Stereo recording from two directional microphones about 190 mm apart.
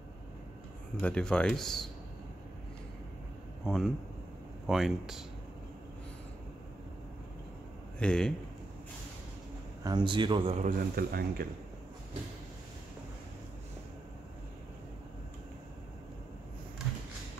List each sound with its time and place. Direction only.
1.0 s speech: 5° left (ahead or behind)
3.6 s speech: centre (ahead or behind)
8.0 s speech: 5° left (ahead or behind)
9.8 s speech: 25° right (ahead or behind)
10.6 s speech: 50° right (ahead or behind)